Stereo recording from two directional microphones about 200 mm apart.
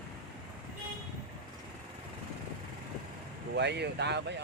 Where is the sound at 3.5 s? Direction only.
60° right (ahead or behind).